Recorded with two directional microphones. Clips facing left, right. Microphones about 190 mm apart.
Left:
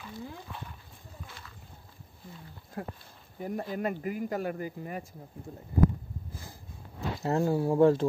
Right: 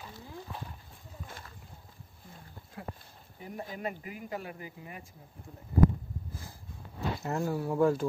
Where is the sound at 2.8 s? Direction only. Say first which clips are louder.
Left 5 dB; 45° left (ahead or behind).